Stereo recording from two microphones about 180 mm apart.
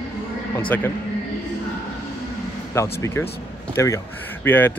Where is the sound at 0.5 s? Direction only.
10° left (ahead or behind).